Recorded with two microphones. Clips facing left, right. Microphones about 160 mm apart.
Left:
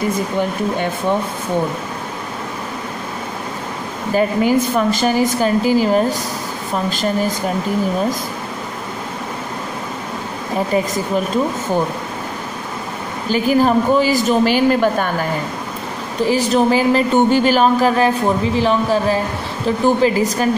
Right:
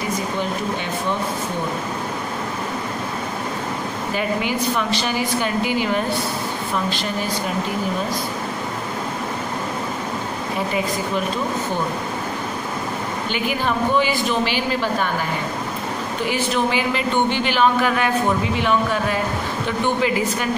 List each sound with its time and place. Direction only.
4.1 s speech: 40° left (ahead or behind)
13.3 s speech: 40° left (ahead or behind)
16.3 s speech: 40° left (ahead or behind)